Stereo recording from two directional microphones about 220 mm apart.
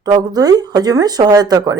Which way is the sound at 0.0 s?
20° right (ahead or behind).